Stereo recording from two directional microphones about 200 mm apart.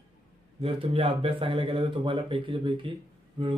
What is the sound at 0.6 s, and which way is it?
Speech, 30° right (ahead or behind).